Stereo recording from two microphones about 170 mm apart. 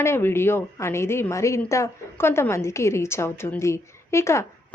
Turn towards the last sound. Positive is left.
turn(degrees=15)  # may be behind; listen again after turning